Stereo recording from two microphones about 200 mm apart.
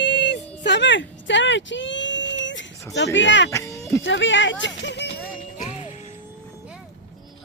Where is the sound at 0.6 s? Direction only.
60° left (ahead or behind).